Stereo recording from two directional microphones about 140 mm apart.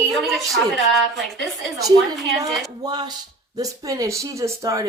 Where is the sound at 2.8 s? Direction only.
30° right (ahead or behind).